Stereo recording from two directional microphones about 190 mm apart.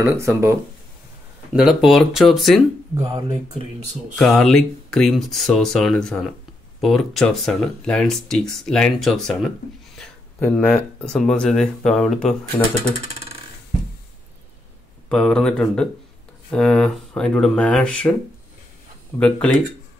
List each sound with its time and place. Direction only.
0.0 s speech: 15° right (ahead or behind)
1.5 s speech: centre (ahead or behind)
2.9 s speech: 25° right (ahead or behind)
4.2 s speech: centre (ahead or behind)
15.0 s speech: 5° left (ahead or behind)
19.1 s speech: 5° left (ahead or behind)